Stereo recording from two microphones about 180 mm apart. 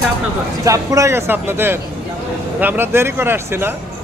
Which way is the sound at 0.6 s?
15° right (ahead or behind).